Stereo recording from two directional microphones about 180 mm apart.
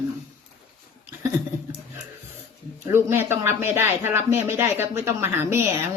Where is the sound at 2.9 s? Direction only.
15° right (ahead or behind).